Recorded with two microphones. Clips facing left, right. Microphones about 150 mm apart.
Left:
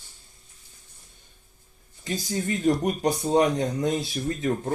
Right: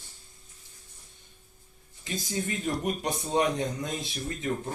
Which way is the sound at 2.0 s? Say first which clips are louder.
Left 4 dB; 40° left (ahead or behind).